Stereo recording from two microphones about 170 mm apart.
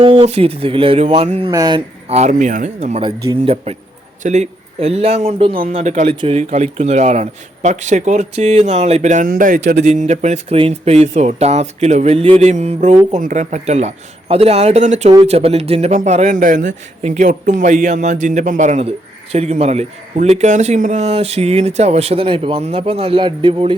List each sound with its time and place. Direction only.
0.0 s a man's voice: 35° right (ahead or behind)
1.5 s speech: 25° right (ahead or behind)
2.0 s a man's voice: 40° right (ahead or behind)